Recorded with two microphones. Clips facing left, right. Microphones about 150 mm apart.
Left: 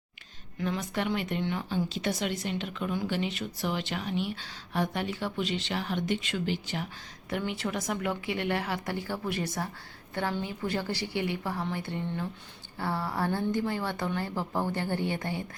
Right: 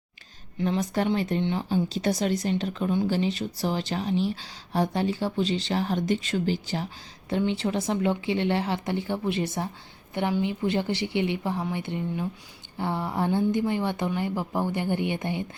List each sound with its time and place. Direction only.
0.6 s speech: 35° right (ahead or behind)
7.3 s a woman's voice: 25° right (ahead or behind)